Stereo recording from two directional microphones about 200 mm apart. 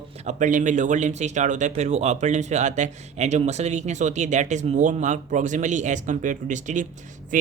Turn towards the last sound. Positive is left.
turn(degrees=-40)  # may be behind; listen again after turning